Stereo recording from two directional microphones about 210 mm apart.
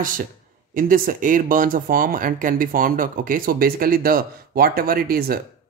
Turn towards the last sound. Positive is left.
turn(degrees=-45)  # may be behind; listen again after turning